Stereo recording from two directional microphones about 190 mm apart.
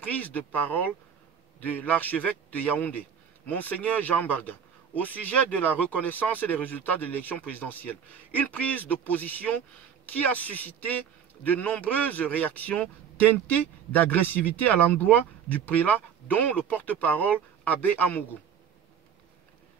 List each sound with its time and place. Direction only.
0.0 s a man's voice: 10° left (ahead or behind)